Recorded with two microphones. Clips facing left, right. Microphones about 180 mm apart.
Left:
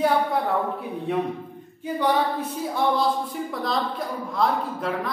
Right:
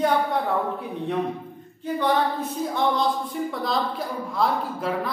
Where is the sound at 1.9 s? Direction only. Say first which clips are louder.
Even; 10° left (ahead or behind).